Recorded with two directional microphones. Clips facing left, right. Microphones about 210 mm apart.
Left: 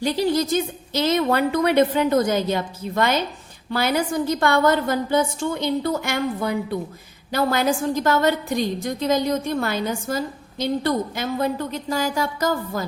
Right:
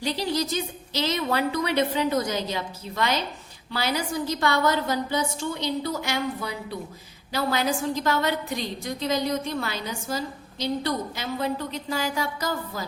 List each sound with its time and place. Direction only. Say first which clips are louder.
0.0 s a woman's voice: left 6 dB; 50° left (ahead or behind)